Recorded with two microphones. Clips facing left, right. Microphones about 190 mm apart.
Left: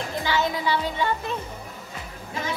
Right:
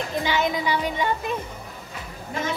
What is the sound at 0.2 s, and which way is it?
Speech, 15° right (ahead or behind).